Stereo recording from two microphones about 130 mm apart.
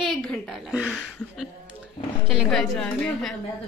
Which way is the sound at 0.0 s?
Centre (ahead or behind).